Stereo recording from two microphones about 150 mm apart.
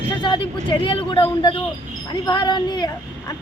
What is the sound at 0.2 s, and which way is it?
A woman's voice, 30° left (ahead or behind).